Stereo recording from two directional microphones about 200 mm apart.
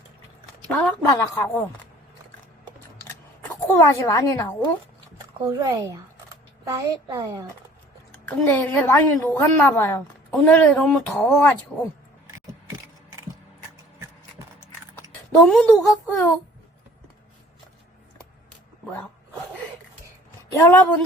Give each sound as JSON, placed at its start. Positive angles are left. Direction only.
{"t": 0.7, "sound": "a woman's voice", "side_deg": 10}
{"t": 2.6, "sound": "scissors", "side_deg": 10}
{"t": 5.5, "sound": "speech", "side_deg": -15}
{"t": 8.1, "sound": "a woman's voice", "side_deg": 10}
{"t": 15.4, "sound": "a woman's voice", "side_deg": 5}
{"t": 20.5, "sound": "a woman's voice", "side_deg": 10}